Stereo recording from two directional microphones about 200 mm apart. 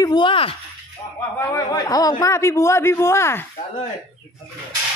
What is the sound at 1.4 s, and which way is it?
A man's voice, 15° left (ahead or behind).